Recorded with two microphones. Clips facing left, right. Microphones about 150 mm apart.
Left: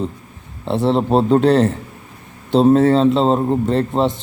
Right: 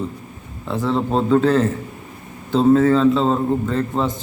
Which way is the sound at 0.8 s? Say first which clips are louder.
Left 4 dB; 25° left (ahead or behind).